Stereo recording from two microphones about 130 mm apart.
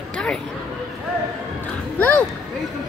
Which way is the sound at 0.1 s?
5° left (ahead or behind).